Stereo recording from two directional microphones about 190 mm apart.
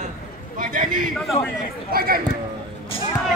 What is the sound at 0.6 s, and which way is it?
A man's voice, 45° right (ahead or behind).